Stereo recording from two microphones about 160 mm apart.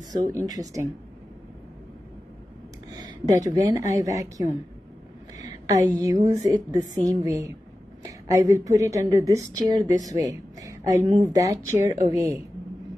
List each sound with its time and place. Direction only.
0.5 s a woman's voice: 20° right (ahead or behind)
2.9 s a sound: 25° right (ahead or behind)
3.5 s a woman's voice: 20° right (ahead or behind)